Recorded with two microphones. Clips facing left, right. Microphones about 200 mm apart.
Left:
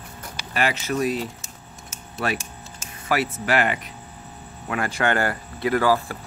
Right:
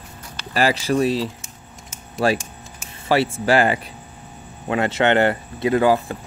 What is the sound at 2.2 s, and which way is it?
Speech, 30° right (ahead or behind).